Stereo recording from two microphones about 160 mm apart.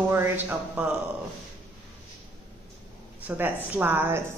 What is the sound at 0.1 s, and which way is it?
Speech, 15° right (ahead or behind).